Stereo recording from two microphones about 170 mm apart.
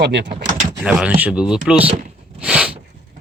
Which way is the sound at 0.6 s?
5° right (ahead or behind).